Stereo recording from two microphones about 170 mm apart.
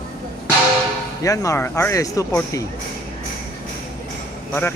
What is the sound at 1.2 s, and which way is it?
Speech, 20° left (ahead or behind).